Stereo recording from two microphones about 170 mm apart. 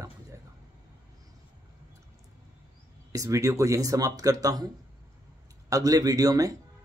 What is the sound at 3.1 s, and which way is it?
Speech, 20° right (ahead or behind).